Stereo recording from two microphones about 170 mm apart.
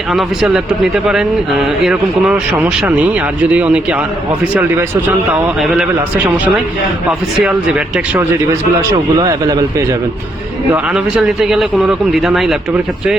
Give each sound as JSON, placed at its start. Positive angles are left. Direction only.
{"t": 0.1, "sound": "a man's voice", "side_deg": 0}
{"t": 7.4, "sound": "a man's voice", "side_deg": -5}
{"t": 8.9, "sound": "a man's voice", "side_deg": -20}
{"t": 10.7, "sound": "a man's voice", "side_deg": -5}